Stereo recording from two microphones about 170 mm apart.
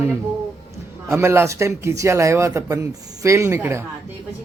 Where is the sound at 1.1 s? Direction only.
15° right (ahead or behind).